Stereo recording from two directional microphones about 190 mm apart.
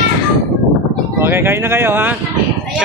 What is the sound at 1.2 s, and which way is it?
Speech, 10° right (ahead or behind).